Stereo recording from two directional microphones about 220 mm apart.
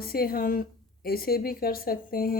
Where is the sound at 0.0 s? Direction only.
45° left (ahead or behind).